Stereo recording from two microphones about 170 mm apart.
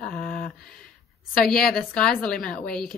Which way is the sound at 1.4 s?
Centre (ahead or behind).